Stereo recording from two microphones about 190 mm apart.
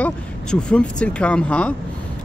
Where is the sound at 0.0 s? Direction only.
5° left (ahead or behind).